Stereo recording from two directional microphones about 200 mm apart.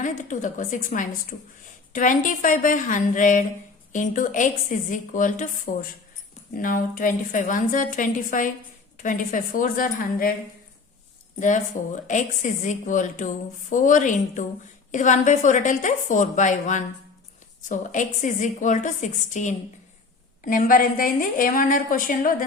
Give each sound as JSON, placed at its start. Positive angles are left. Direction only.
{"t": 0.0, "sound": "a woman's voice", "side_deg": 40}
{"t": 11.3, "sound": "a woman's voice", "side_deg": 40}